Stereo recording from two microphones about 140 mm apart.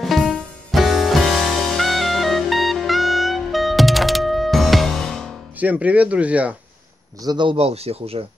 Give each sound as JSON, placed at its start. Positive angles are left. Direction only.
{"t": 0.0, "sound": "music", "side_deg": 0}
{"t": 5.6, "sound": "speech", "side_deg": -10}
{"t": 7.2, "sound": "speech", "side_deg": -35}